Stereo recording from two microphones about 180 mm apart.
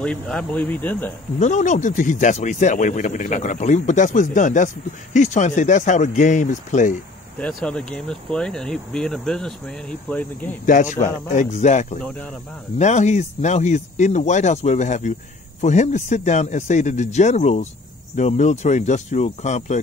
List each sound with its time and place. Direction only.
0.0 s speech: 5° left (ahead or behind)
1.4 s speech: 45° left (ahead or behind)
7.3 s speech: 5° left (ahead or behind)
10.6 s speech: 45° left (ahead or behind)
12.0 s speech: 5° left (ahead or behind)
12.7 s speech: 40° left (ahead or behind)